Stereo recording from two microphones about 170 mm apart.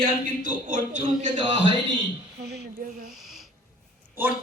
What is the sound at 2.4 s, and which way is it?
Speech, 70° right (ahead or behind).